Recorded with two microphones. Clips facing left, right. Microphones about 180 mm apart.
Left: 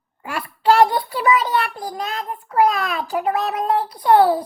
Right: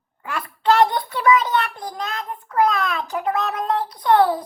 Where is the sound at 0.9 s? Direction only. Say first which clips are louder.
Left 2 dB; 5° left (ahead or behind).